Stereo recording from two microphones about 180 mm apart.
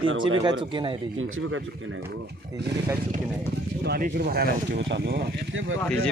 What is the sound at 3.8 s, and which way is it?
Speech, 60° right (ahead or behind).